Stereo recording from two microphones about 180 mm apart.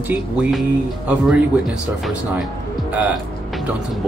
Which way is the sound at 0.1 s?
5° right (ahead or behind).